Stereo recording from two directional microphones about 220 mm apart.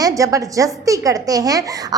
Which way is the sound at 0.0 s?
15° right (ahead or behind).